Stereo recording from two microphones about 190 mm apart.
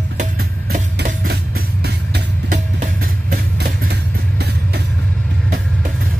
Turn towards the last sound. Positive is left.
turn(degrees=-60)  # may be behind; listen again after turning